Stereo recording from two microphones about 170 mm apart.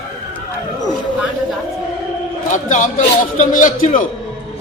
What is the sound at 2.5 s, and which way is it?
A man's voice, 50° left (ahead or behind).